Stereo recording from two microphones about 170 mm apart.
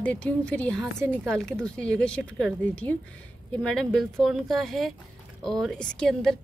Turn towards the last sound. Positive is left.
turn(degrees=5)  # may be behind; listen again after turning